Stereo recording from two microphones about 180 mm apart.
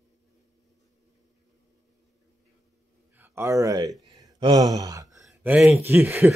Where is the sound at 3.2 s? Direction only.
15° right (ahead or behind).